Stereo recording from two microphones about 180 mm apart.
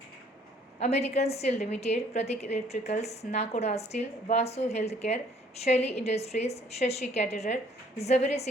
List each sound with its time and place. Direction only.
0.8 s a woman's voice: 35° left (ahead or behind)